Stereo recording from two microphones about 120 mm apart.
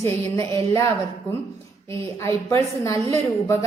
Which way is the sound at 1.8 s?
25° left (ahead or behind).